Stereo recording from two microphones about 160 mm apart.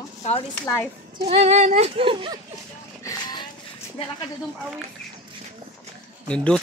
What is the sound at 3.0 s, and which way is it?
Vehicle, 25° left (ahead or behind).